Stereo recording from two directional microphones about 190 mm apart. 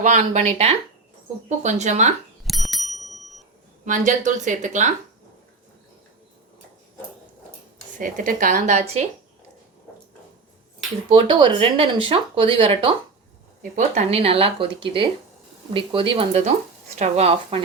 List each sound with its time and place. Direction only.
0.0 s speech: 40° right (ahead or behind)
2.4 s bicycle bell: centre (ahead or behind)
3.8 s speech: 40° right (ahead or behind)
7.9 s a woman's voice: 45° right (ahead or behind)
11.1 s speech: 25° right (ahead or behind)
13.6 s speech: 40° right (ahead or behind)